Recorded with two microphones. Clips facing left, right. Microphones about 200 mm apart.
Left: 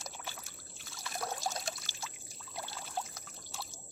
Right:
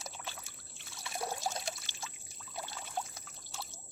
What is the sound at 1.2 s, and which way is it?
Trickle, 5° right (ahead or behind).